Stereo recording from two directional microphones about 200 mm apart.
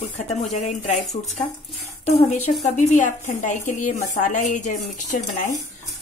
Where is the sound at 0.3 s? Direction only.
35° left (ahead or behind).